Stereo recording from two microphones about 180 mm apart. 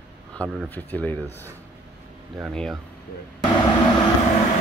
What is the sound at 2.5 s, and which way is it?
Speech, centre (ahead or behind).